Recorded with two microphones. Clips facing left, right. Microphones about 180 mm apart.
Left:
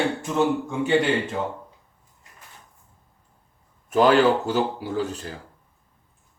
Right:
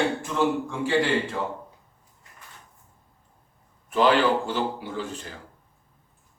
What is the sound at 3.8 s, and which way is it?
Speech, 45° left (ahead or behind).